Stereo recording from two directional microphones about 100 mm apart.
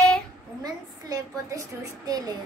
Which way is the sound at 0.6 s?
40° right (ahead or behind).